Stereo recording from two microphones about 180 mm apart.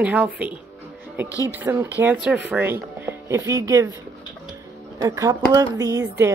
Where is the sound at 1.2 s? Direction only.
20° left (ahead or behind).